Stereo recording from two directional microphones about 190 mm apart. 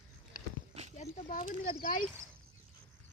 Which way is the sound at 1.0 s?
40° left (ahead or behind).